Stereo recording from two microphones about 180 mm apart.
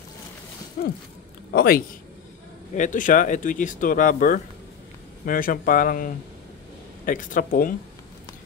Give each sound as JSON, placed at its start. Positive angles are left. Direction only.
{"t": 0.8, "sound": "a sound", "side_deg": 55}
{"t": 1.5, "sound": "a man's voice", "side_deg": 60}
{"t": 2.7, "sound": "speech", "side_deg": 45}